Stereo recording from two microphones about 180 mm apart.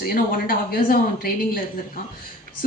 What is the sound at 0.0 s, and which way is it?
A woman's voice, 55° left (ahead or behind).